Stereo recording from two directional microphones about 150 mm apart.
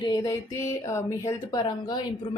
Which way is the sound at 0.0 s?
25° left (ahead or behind).